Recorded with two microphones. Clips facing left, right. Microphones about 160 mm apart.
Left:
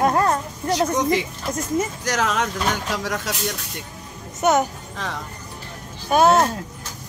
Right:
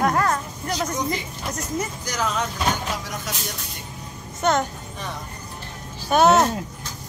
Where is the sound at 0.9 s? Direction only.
85° left.